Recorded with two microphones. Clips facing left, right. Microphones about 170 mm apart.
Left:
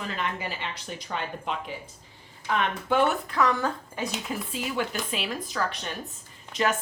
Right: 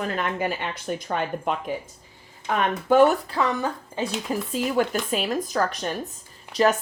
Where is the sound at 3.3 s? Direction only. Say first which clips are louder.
Even; 25° right (ahead or behind).